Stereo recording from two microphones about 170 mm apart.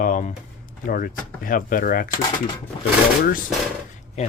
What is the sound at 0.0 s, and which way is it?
Speech, 50° left (ahead or behind).